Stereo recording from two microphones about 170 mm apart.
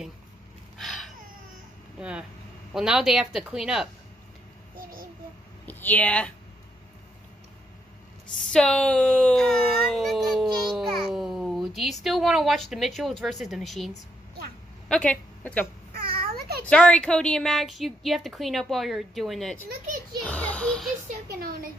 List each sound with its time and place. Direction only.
0.7 s a sound: centre (ahead or behind)
2.0 s a woman's voice: 5° right (ahead or behind)
5.7 s speech: 10° left (ahead or behind)
8.5 s a woman's voice: 5° left (ahead or behind)
9.9 s a sound: centre (ahead or behind)
14.9 s speech: 5° left (ahead or behind)
15.9 s babbling: 65° right (ahead or behind)
16.6 s a woman's voice: 5° left (ahead or behind)
21.3 s speech: 60° right (ahead or behind)